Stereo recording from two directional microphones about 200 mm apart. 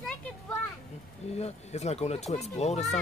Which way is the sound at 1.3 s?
30° left (ahead or behind).